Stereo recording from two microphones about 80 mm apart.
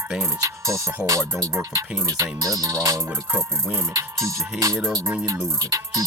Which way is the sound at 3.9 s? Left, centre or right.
Right.